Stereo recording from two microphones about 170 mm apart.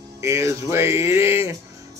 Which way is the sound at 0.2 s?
15° right (ahead or behind).